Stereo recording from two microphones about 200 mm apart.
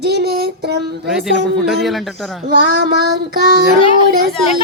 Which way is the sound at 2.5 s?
50° right (ahead or behind).